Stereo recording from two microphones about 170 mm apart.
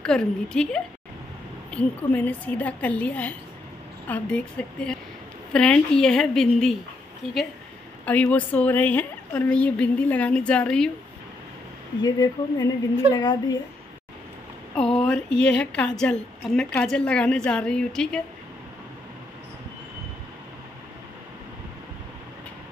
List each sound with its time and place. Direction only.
0.0 s a woman's voice: 5° left (ahead or behind)
8.0 s a woman's voice: 10° left (ahead or behind)
12.0 s speech: 20° left (ahead or behind)
15.3 s a woman's voice: 5° left (ahead or behind)